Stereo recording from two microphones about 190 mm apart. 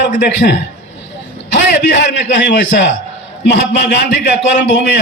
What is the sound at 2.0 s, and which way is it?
Speech, 65° left (ahead or behind).